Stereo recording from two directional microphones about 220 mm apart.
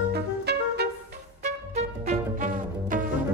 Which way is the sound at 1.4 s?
30° right (ahead or behind).